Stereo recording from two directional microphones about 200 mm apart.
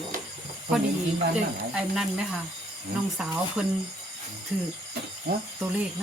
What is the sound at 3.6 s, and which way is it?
Speech, 5° right (ahead or behind).